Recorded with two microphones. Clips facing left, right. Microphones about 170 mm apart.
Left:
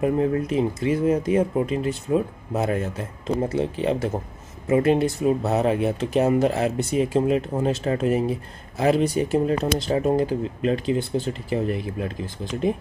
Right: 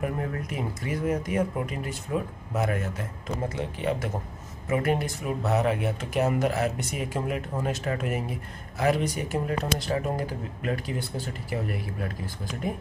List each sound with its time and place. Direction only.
0.0 s speech: 25° left (ahead or behind)